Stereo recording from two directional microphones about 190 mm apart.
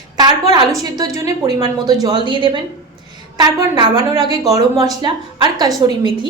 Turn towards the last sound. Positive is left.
turn(degrees=-20)  # may be behind; listen again after turning